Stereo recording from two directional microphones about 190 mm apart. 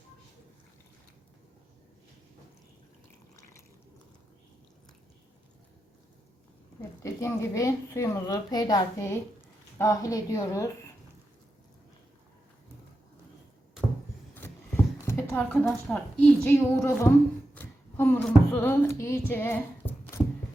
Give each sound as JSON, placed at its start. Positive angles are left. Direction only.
{"t": 7.0, "sound": "a woman's voice", "side_deg": 15}
{"t": 15.0, "sound": "a sound", "side_deg": 10}
{"t": 15.6, "sound": "a woman's voice", "side_deg": 5}